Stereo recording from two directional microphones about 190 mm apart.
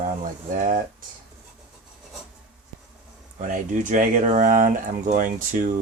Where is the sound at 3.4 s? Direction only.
45° right (ahead or behind).